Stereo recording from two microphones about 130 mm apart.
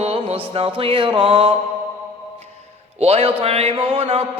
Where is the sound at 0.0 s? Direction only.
50° right (ahead or behind).